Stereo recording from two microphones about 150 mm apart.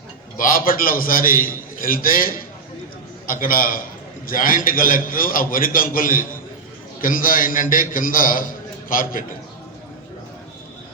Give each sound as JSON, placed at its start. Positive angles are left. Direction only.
{"t": 0.3, "sound": "a man's voice", "side_deg": 70}